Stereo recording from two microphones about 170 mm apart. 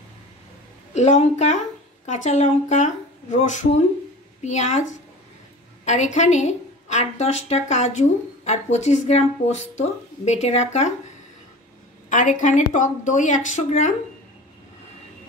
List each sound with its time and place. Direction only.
0.9 s a woman's voice: 45° left (ahead or behind)
12.1 s a woman's voice: 45° left (ahead or behind)